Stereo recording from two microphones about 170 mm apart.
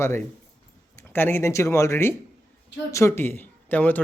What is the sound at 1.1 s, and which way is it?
Speech, 15° left (ahead or behind).